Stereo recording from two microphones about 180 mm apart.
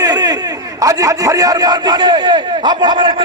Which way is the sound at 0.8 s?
20° right (ahead or behind).